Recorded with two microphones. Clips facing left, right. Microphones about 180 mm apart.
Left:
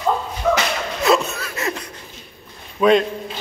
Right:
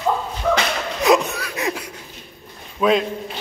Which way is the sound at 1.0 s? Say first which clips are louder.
Right 1 dB; 15° right (ahead or behind).